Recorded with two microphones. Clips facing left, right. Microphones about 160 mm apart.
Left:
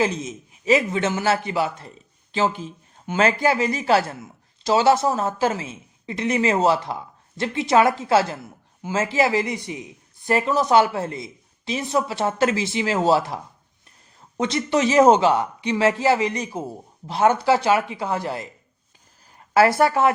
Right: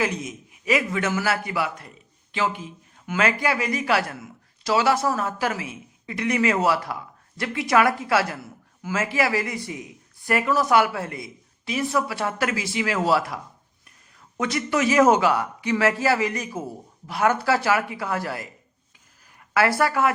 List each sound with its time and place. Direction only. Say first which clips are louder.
0.0 s speech: left 3 dB; 25° left (ahead or behind)